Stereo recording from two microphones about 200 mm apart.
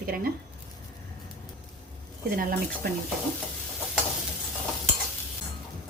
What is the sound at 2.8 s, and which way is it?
Speech, 50° right (ahead or behind).